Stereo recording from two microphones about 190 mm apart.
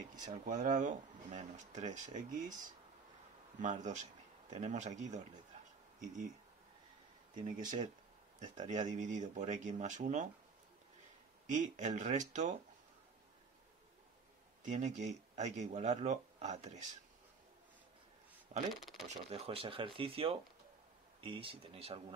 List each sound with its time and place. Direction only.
0.2 s speech: 40° right (ahead or behind)
7.5 s speech: 40° right (ahead or behind)
11.4 s speech: 40° right (ahead or behind)
14.6 s speech: 40° right (ahead or behind)
18.7 s speech: centre (ahead or behind)
19.4 s speech: 30° right (ahead or behind)